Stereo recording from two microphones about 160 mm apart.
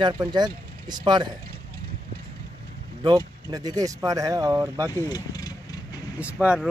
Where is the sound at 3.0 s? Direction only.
25° right (ahead or behind).